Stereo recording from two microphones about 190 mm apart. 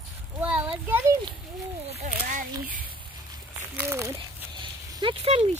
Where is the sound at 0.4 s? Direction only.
5° right (ahead or behind).